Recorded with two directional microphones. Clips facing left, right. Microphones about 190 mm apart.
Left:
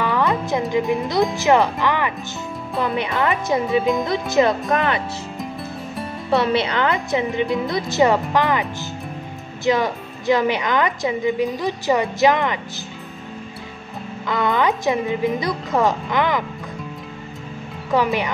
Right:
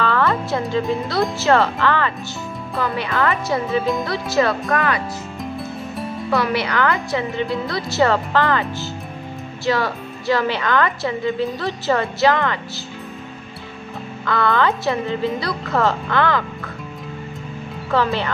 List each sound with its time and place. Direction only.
0.0 s music: 15° left (ahead or behind)
1.3 s a woman's voice: 15° left (ahead or behind)
5.4 s music: centre (ahead or behind)
6.3 s a woman's voice: 25° left (ahead or behind)
14.2 s a woman's voice: 15° left (ahead or behind)
17.9 s a woman's voice: 15° left (ahead or behind)